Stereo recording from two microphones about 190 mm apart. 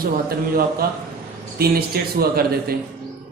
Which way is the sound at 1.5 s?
55° right (ahead or behind).